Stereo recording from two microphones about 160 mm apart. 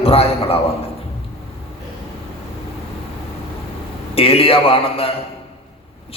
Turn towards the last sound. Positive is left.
turn(degrees=35)  # may be behind; listen again after turning